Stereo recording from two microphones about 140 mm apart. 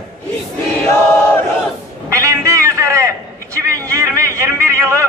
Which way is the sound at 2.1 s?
20° right (ahead or behind).